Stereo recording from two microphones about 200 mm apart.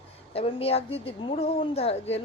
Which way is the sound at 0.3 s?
30° left (ahead or behind).